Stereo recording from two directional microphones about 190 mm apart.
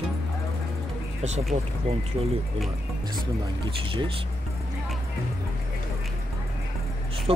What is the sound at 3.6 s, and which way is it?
Speech, 25° right (ahead or behind).